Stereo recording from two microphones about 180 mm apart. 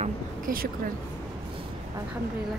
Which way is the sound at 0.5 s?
55° right (ahead or behind).